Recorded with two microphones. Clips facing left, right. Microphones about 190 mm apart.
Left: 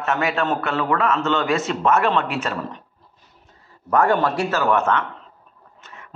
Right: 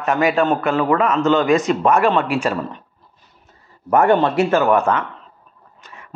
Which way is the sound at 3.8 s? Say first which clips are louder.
Right 4 dB; 25° right (ahead or behind).